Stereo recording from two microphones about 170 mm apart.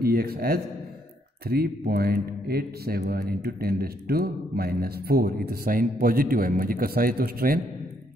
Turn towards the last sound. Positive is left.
turn(degrees=-60)  # may be behind; listen again after turning